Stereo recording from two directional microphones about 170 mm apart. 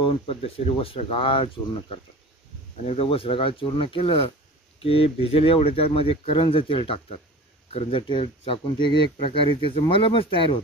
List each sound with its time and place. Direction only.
0.0 s speech: 35° left (ahead or behind)